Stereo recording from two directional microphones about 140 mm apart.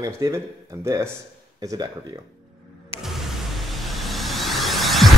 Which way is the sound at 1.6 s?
25° right (ahead or behind).